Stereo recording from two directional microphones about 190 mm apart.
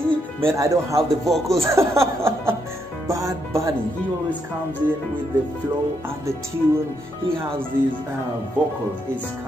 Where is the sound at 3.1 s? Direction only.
15° right (ahead or behind).